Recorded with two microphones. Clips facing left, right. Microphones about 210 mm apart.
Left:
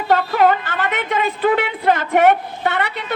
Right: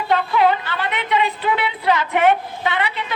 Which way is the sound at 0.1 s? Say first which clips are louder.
Left 2 dB; 45° left (ahead or behind).